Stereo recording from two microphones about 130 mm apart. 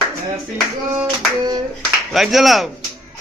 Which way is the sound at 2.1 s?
Centre (ahead or behind).